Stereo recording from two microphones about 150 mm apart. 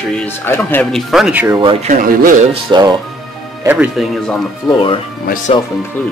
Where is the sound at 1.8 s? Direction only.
60° right (ahead or behind).